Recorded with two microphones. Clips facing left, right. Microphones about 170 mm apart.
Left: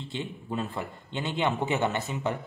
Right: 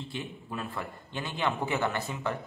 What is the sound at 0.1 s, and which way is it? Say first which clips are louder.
A man's voice: left 4 dB; 25° left (ahead or behind).